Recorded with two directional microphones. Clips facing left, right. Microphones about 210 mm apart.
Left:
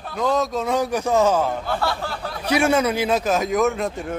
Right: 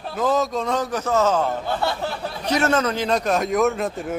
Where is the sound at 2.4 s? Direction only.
10° left (ahead or behind).